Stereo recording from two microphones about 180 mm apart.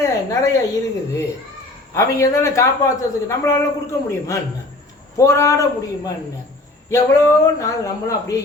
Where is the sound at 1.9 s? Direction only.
15° left (ahead or behind).